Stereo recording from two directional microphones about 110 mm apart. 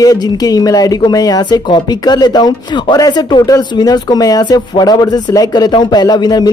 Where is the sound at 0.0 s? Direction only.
35° left (ahead or behind).